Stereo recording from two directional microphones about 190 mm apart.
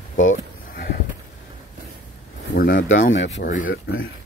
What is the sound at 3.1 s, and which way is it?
Speech, 75° left (ahead or behind).